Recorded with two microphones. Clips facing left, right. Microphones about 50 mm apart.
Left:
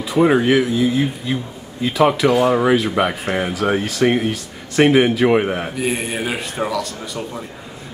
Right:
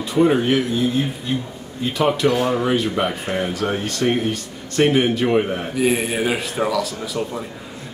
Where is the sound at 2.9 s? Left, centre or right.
Centre.